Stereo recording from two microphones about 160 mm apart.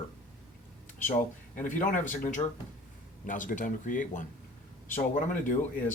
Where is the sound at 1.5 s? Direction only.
55° left (ahead or behind).